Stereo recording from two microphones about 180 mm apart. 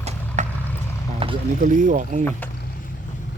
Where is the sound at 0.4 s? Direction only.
40° right (ahead or behind).